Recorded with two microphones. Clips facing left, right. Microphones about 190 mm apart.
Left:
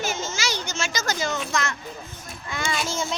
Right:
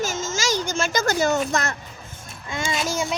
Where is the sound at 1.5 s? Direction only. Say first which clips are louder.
Right 2 dB; 35° right (ahead or behind).